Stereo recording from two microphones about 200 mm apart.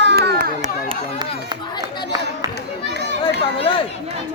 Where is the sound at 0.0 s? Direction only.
55° right (ahead or behind).